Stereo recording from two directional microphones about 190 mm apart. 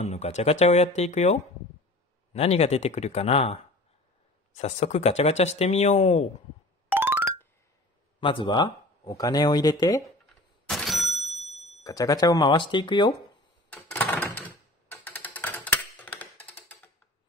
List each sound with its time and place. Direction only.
0.0 s speech: 35° left (ahead or behind)
6.9 s music: 10° right (ahead or behind)
8.2 s speech: 25° left (ahead or behind)
10.7 s a sound: centre (ahead or behind)
11.8 s speech: 20° left (ahead or behind)
13.8 s a sound: 10° left (ahead or behind)
14.9 s typing: 10° left (ahead or behind)